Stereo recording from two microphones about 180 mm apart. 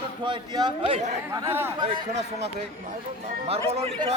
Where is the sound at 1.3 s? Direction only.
15° right (ahead or behind).